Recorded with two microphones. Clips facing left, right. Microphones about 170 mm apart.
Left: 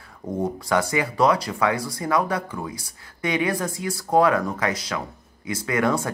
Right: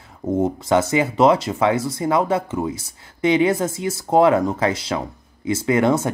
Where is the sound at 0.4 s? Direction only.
20° right (ahead or behind).